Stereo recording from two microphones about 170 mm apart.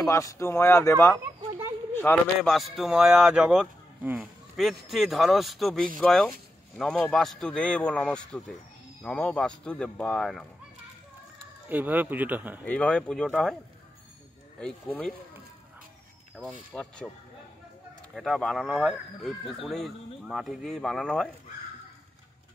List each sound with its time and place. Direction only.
0.1 s speech: 20° left (ahead or behind)
2.5 s speech: centre (ahead or behind)
11.7 s speech: 10° right (ahead or behind)
12.6 s speech: 5° left (ahead or behind)
14.6 s speech: 5° left (ahead or behind)
16.7 s speech: 5° left (ahead or behind)
18.1 s speech: centre (ahead or behind)